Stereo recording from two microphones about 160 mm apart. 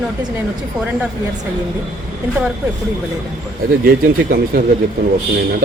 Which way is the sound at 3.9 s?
65° right (ahead or behind).